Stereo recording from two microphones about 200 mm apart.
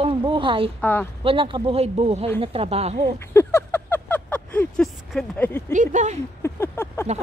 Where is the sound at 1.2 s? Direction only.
25° right (ahead or behind).